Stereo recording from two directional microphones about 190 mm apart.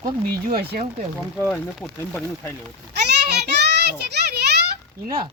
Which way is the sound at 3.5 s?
60° right (ahead or behind).